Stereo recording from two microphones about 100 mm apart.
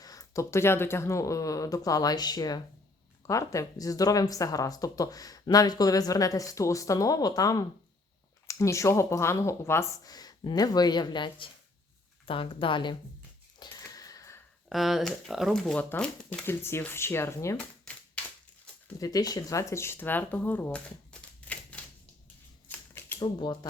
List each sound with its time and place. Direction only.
0.0 s speech: 35° left (ahead or behind); by 13.0 s 55° left (ahead or behind)
13.6 s a sound: 35° left (ahead or behind)
14.7 s speech: centre (ahead or behind)
15.8 s speech: 10° left (ahead or behind)
16.5 s speech: 25° left (ahead or behind)
18.9 s speech: 40° left (ahead or behind); by 21.8 s 15° left (ahead or behind)
22.7 s typewriter: 20° left (ahead or behind)
23.2 s speech: 50° left (ahead or behind)